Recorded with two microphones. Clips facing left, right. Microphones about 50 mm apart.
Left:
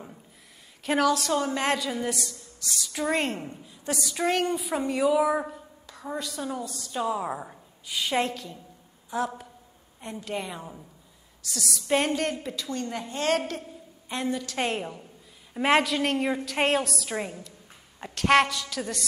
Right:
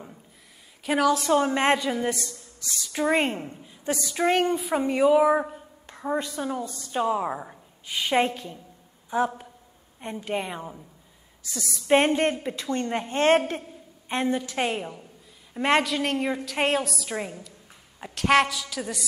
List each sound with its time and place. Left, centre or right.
0.8 s a woman's voice: centre
1.1 s a woman's voice: centre
2.0 s speech: centre
5.9 s a sound: right
6.3 s speech: centre
7.8 s a woman's voice: centre
14.6 s a woman's voice: centre